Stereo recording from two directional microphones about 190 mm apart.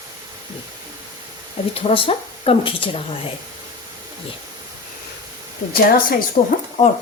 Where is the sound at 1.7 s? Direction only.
30° left (ahead or behind).